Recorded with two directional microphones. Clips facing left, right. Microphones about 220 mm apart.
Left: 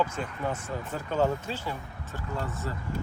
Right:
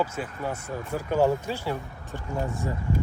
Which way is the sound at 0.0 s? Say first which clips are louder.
Right 1 dB; 10° right (ahead or behind).